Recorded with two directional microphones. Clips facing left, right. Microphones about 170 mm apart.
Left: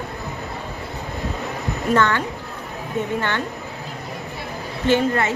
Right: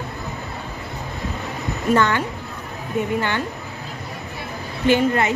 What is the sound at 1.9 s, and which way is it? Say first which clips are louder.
Speech: even; 15° right (ahead or behind).